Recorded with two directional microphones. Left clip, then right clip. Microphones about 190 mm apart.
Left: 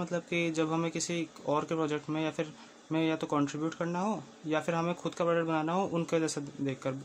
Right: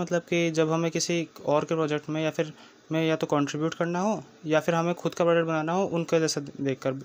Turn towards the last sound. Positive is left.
turn(degrees=-25)  # may be behind; listen again after turning